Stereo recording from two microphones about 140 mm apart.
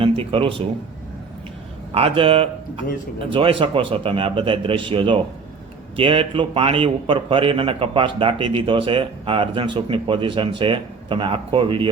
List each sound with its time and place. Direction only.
0.0 s speech: 40° right (ahead or behind)
1.9 s a man's voice: 45° right (ahead or behind)